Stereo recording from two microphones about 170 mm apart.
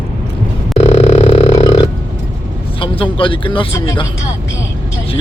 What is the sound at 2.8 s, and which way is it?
Speech, 30° left (ahead or behind).